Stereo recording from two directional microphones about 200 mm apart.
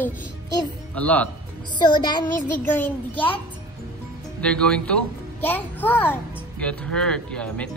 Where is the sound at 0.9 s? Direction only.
5° left (ahead or behind).